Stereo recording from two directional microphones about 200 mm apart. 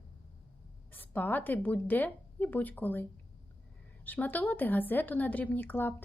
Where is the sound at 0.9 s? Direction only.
10° left (ahead or behind).